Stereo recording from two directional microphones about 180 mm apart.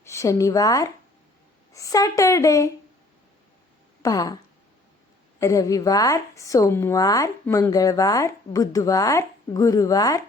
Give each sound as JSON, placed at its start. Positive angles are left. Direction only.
{"t": 0.0, "sound": "speech", "side_deg": 15}
{"t": 4.0, "sound": "speech", "side_deg": 20}
{"t": 5.4, "sound": "speech", "side_deg": 15}